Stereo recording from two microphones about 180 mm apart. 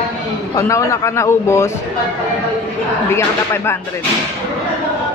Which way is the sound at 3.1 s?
15° left (ahead or behind).